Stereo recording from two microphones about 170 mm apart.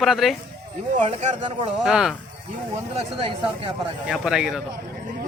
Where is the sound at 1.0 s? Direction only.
40° right (ahead or behind).